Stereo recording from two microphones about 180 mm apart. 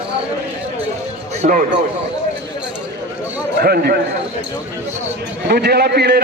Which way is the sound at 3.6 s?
60° right (ahead or behind).